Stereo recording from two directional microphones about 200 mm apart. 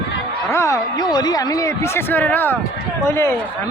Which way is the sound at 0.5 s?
15° left (ahead or behind).